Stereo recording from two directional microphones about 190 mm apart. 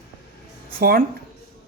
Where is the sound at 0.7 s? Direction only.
50° right (ahead or behind).